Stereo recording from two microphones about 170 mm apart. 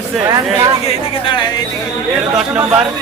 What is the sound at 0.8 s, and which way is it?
Speech, 30° left (ahead or behind).